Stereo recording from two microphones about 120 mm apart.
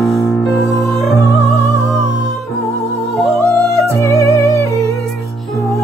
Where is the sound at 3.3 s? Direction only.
25° right (ahead or behind).